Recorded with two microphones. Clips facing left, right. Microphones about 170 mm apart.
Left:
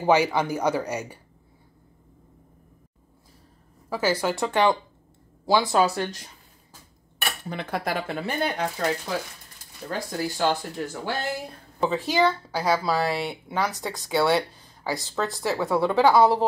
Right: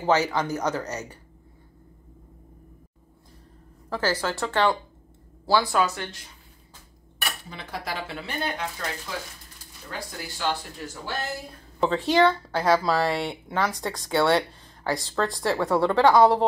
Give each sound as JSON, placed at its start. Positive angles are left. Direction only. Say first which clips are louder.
{"t": 0.0, "sound": "speech", "louder": "left 2 dB", "side_deg": 10}
{"t": 3.9, "sound": "speech", "louder": "left 2 dB", "side_deg": 10}
{"t": 5.7, "sound": "speech", "louder": "left 3 dB", "side_deg": 30}
{"t": 7.4, "sound": "speech", "louder": "left 10 dB", "side_deg": 55}
{"t": 9.8, "sound": "speech", "louder": "left 7 dB", "side_deg": 45}
{"t": 11.8, "sound": "speech", "louder": "right 2 dB", "side_deg": 0}